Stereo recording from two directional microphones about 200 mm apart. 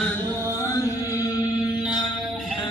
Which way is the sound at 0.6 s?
15° left (ahead or behind).